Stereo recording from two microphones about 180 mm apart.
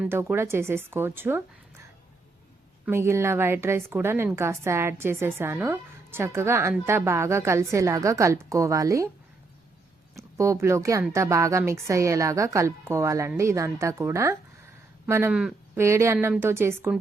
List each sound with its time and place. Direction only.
0.0 s a woman's voice: 10° right (ahead or behind)
2.8 s a woman's voice: 15° right (ahead or behind)
10.2 s a woman's voice: 15° right (ahead or behind)